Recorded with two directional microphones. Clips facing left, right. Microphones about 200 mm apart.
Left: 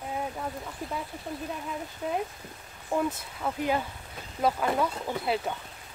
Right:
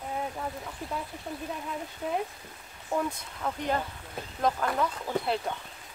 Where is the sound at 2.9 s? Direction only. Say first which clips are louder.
Left 2 dB; 5° left (ahead or behind).